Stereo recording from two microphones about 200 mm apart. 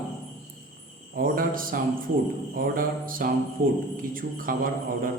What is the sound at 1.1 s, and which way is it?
A man's voice, 45° right (ahead or behind).